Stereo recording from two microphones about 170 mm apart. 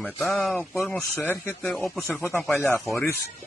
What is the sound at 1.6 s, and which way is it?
Speech, centre (ahead or behind).